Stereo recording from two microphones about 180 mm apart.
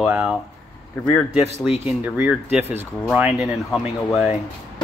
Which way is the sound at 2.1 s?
10° right (ahead or behind).